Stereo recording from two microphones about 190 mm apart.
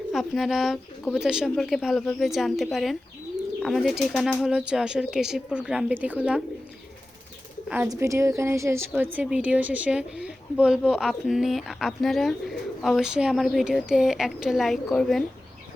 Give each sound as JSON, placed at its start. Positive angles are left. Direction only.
{"t": 0.1, "sound": "a woman's voice", "side_deg": 0}
{"t": 7.7, "sound": "a woman's voice", "side_deg": -10}